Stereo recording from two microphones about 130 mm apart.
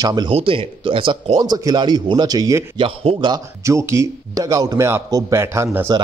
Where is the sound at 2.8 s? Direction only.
45° right (ahead or behind).